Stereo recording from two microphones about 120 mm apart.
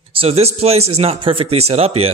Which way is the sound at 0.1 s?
55° right (ahead or behind).